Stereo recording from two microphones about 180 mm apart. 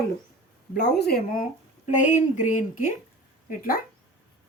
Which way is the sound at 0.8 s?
70° left (ahead or behind).